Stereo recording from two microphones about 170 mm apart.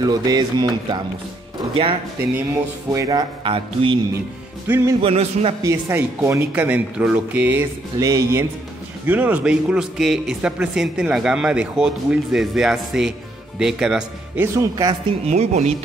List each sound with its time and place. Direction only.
0.0 s a man's voice: 25° right (ahead or behind)
4.6 s speech: 15° right (ahead or behind)
5.0 s a man's voice: 40° right (ahead or behind)
5.6 s a man's voice: 20° right (ahead or behind)
15.2 s a man's voice: 40° right (ahead or behind)